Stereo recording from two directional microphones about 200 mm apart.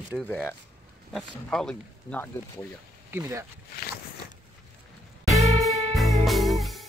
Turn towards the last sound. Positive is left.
turn(degrees=0)  # may be behind; listen again after turning